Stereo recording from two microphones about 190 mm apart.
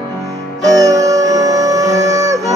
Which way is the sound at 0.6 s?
20° right (ahead or behind).